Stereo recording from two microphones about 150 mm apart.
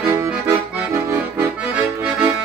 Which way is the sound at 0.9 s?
20° right (ahead or behind).